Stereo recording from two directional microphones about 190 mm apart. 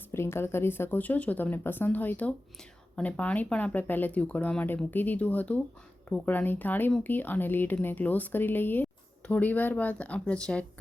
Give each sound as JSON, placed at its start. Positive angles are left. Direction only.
{"t": 0.1, "sound": "speech", "side_deg": 15}